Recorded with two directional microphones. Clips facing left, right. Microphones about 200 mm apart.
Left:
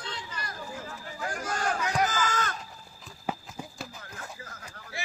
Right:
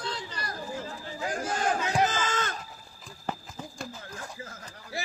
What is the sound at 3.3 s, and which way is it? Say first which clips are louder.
Horse: left 1 dB; 5° left (ahead or behind).